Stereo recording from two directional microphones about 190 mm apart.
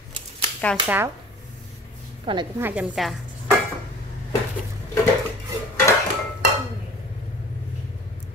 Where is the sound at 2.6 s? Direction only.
10° right (ahead or behind).